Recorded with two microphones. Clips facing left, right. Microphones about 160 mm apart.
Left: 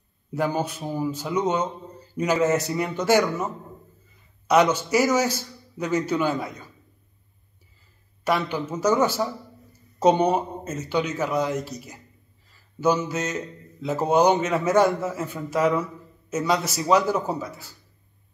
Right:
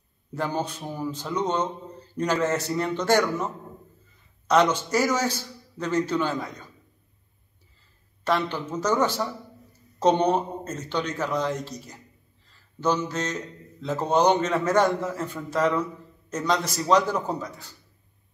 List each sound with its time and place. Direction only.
0.3 s speech: 10° left (ahead or behind)
8.2 s speech: 10° left (ahead or behind)